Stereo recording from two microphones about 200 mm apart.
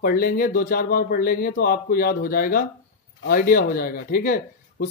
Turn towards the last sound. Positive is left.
turn(degrees=45)  # may be behind; listen again after turning